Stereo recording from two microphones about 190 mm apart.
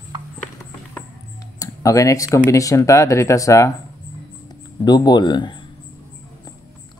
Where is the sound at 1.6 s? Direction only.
15° left (ahead or behind).